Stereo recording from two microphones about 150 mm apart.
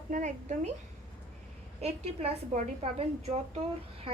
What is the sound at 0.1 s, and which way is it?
Speech, 55° right (ahead or behind).